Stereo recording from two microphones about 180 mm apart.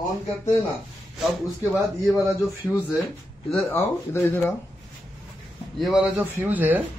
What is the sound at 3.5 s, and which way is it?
Speech, 10° left (ahead or behind).